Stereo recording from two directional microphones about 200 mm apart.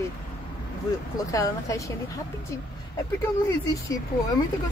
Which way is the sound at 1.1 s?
15° left (ahead or behind).